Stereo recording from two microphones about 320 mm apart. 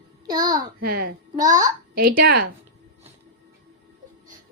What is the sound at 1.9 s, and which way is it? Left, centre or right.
Speech, right.